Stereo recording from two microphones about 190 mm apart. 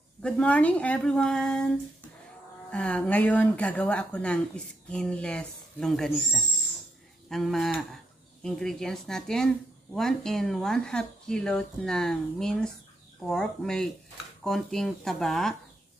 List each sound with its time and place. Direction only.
0.2 s speech: 5° left (ahead or behind)
2.7 s speech: 5° left (ahead or behind)